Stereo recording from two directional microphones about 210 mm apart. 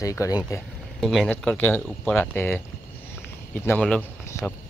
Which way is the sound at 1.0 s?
Centre (ahead or behind).